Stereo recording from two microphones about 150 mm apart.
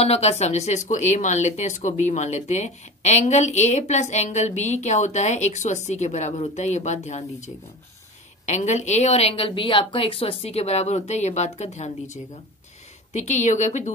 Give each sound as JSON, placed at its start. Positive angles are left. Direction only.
{"t": 0.0, "sound": "speech", "side_deg": 45}